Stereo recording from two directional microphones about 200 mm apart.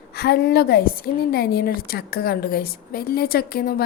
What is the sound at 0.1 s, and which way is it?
A woman's voice, 55° left (ahead or behind).